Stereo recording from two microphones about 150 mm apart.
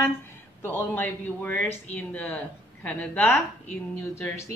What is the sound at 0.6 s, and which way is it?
Speech, 15° left (ahead or behind).